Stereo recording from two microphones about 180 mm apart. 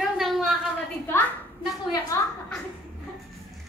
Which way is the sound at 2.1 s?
15° left (ahead or behind).